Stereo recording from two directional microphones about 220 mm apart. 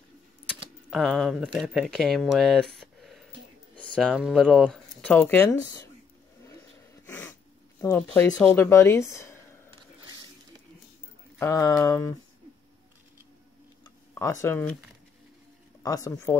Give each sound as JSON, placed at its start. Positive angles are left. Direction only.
{"t": 0.8, "sound": "speech", "side_deg": 0}
{"t": 7.1, "sound": "cat", "side_deg": 5}
{"t": 7.8, "sound": "speech", "side_deg": 10}
{"t": 11.3, "sound": "speech", "side_deg": 15}
{"t": 13.8, "sound": "a sound", "side_deg": 15}
{"t": 15.8, "sound": "speech", "side_deg": 15}